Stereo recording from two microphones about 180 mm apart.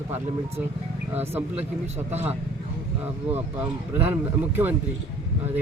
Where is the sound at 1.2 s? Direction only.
10° right (ahead or behind).